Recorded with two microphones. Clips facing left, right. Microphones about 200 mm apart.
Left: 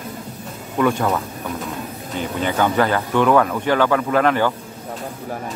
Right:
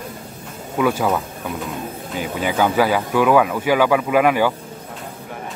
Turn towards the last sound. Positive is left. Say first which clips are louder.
# right 1 dB
turn(degrees=-10)  # may be behind; listen again after turning